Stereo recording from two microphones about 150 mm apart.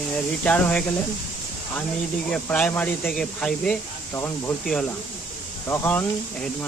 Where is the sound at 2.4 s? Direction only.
10° left (ahead or behind).